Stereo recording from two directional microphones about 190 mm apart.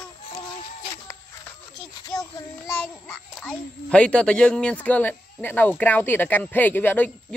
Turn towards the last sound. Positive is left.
turn(degrees=10)  # may be behind; listen again after turning